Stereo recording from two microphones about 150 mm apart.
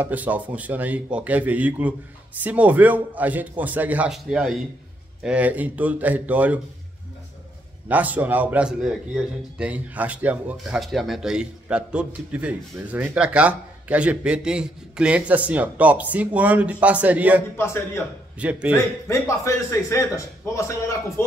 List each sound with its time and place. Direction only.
0.0 s a man's voice: 10° right (ahead or behind)
7.9 s a man's voice: 10° right (ahead or behind)
17.6 s a man's voice: 15° left (ahead or behind)
18.4 s a man's voice: 10° right (ahead or behind)
19.0 s a man's voice: 20° left (ahead or behind)